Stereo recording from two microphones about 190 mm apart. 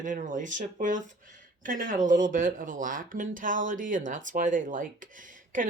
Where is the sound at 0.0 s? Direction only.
40° right (ahead or behind).